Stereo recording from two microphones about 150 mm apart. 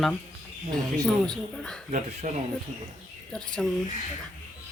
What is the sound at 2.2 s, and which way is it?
Speech, 55° right (ahead or behind).